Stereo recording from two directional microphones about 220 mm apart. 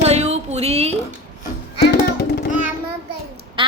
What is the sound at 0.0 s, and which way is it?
Music, 30° right (ahead or behind).